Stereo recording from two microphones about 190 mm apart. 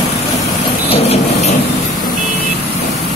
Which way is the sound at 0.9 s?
35° left (ahead or behind).